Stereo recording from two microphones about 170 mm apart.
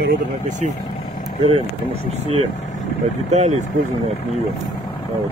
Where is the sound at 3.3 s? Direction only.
45° right (ahead or behind).